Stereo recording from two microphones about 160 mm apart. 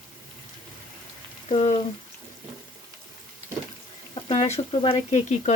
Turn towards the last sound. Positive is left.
turn(degrees=45)  # may be behind; listen again after turning